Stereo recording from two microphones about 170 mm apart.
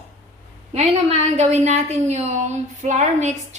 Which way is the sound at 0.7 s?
40° right (ahead or behind).